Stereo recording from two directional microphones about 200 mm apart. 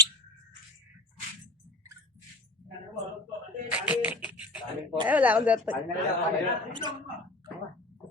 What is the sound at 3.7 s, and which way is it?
Music, 5° right (ahead or behind).